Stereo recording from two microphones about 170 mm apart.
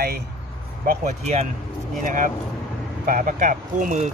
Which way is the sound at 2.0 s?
50° right (ahead or behind).